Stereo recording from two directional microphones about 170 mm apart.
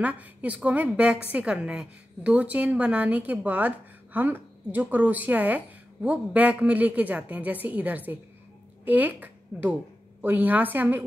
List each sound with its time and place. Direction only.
0.0 s a woman's voice: 10° right (ahead or behind)